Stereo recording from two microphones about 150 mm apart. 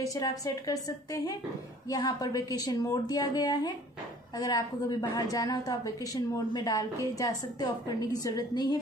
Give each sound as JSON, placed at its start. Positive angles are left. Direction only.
{"t": 0.0, "sound": "a woman's voice", "side_deg": 25}